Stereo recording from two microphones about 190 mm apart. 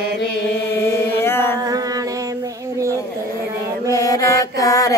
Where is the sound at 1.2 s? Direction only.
10° left (ahead or behind).